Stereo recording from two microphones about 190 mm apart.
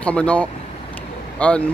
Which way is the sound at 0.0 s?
5° left (ahead or behind).